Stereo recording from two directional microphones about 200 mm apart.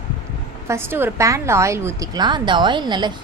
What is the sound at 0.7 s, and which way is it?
A woman's voice, 10° right (ahead or behind).